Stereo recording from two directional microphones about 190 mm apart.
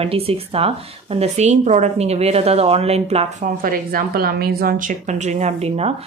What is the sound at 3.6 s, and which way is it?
A woman's voice, 50° right (ahead or behind).